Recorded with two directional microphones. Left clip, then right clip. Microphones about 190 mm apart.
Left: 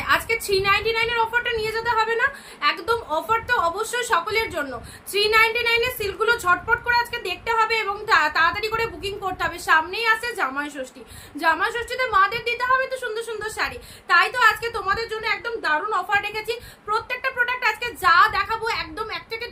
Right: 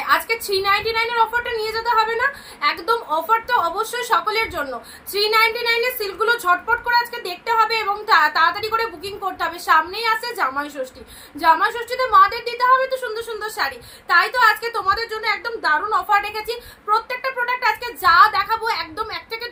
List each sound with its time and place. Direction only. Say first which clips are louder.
0.6 s a woman's voice: right 3 dB; 15° left (ahead or behind)